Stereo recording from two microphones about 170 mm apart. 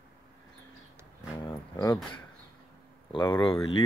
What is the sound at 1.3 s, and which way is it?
Speech, 20° left (ahead or behind).